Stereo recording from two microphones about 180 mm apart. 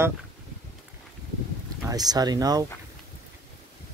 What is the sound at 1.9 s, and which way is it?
Speech, 20° right (ahead or behind).